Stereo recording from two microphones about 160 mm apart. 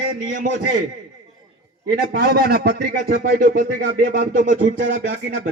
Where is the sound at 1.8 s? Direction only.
80° right.